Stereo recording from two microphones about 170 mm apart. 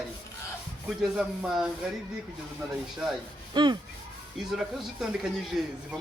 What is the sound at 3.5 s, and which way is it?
Speech, 25° right (ahead or behind).